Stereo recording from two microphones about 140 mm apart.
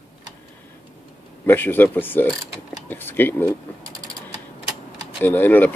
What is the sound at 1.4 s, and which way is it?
Speech, 15° left (ahead or behind).